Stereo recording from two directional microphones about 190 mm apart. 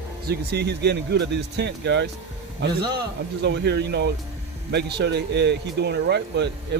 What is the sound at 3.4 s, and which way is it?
Speech, 60° right (ahead or behind).